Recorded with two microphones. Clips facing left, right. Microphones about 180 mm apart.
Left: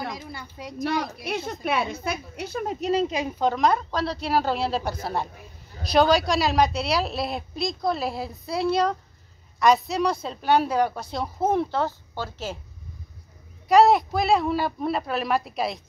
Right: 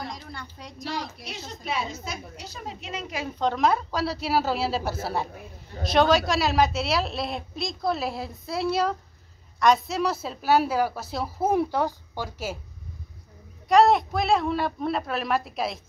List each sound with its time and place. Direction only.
0.3 s a woman's voice: 5° left (ahead or behind)
0.8 s a woman's voice: 55° left (ahead or behind)
3.1 s a woman's voice: 20° left (ahead or behind)
3.3 s a woman's voice: centre (ahead or behind)
13.7 s a woman's voice: centre (ahead or behind)